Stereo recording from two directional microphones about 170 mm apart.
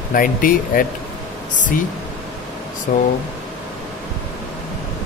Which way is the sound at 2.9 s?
55° left (ahead or behind).